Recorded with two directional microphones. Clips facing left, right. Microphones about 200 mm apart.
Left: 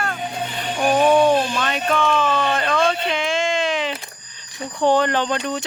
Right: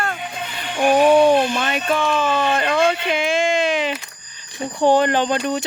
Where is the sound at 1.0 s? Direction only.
10° right (ahead or behind).